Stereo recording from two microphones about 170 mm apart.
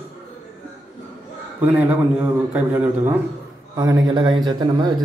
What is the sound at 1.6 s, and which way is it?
Speech, 10° right (ahead or behind).